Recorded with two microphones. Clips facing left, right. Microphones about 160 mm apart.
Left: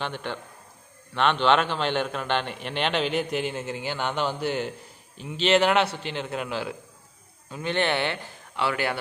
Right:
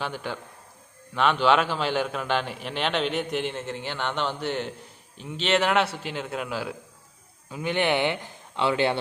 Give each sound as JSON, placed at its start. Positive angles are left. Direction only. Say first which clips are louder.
{"t": 0.0, "sound": "a man's voice", "louder": "even", "side_deg": -5}